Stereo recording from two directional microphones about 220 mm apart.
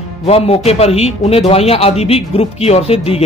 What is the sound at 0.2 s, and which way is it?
Speech, 25° left (ahead or behind).